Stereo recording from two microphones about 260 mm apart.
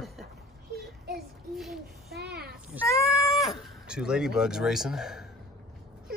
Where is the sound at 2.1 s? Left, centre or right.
Right.